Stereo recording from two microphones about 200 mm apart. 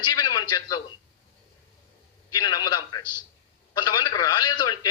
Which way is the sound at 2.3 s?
20° left (ahead or behind).